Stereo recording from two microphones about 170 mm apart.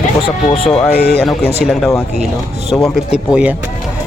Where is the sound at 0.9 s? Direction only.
70° left (ahead or behind).